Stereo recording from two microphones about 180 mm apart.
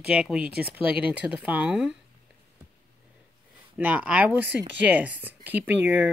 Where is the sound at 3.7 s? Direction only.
10° right (ahead or behind).